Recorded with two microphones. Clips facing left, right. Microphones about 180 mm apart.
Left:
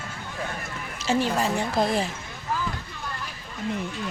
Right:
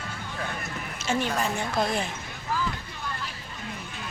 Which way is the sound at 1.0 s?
35° left (ahead or behind).